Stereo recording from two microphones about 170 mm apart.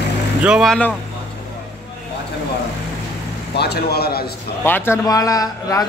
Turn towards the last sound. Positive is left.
turn(degrees=20)  # may be behind; listen again after turning